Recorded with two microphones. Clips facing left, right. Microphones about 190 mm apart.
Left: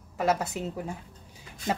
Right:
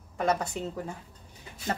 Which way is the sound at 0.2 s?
5° left (ahead or behind).